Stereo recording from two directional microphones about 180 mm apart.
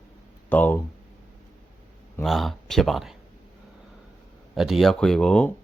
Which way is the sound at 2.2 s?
Centre (ahead or behind).